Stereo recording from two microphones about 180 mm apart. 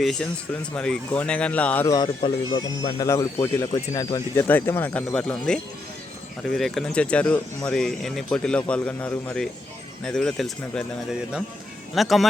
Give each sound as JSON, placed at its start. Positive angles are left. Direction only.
{"t": 0.0, "sound": "speech", "side_deg": 5}
{"t": 2.0, "sound": "speech", "side_deg": 25}
{"t": 11.9, "sound": "speech", "side_deg": 0}